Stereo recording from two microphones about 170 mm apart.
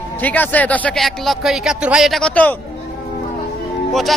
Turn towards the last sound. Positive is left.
turn(degrees=0)  # may be behind; listen again after turning